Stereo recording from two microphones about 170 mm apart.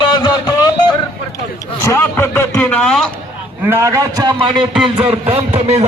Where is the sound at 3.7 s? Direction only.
15° right (ahead or behind).